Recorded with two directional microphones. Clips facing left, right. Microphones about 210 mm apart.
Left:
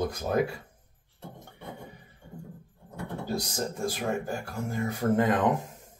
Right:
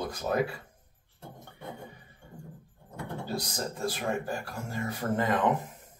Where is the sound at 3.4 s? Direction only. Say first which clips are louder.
Left 2 dB; 10° left (ahead or behind).